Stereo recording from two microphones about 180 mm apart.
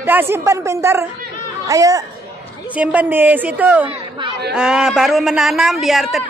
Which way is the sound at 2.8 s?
10° right (ahead or behind).